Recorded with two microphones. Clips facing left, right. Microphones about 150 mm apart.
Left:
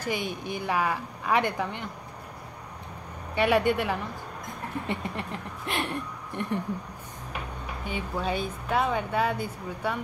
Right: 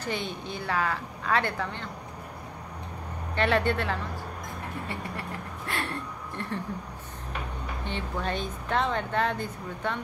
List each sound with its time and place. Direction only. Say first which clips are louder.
0.0 s speech: left 2 dB; 10° left (ahead or behind)
3.3 s speech: left 2 dB; 10° left (ahead or behind)
7.8 s speech: left 2 dB; 10° left (ahead or behind)